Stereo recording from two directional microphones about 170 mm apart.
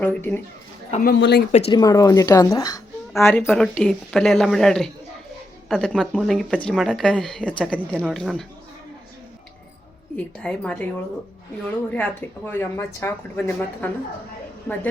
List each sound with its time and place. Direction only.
0.0 s speech: 10° left (ahead or behind)
1.0 s speech: 75° left (ahead or behind)
1.5 s speech: 35° left (ahead or behind)
1.8 s a woman's voice: 20° left (ahead or behind)
3.4 s speech: centre (ahead or behind)
10.2 s speech: 5° left (ahead or behind)
11.9 s speech: 10° left (ahead or behind)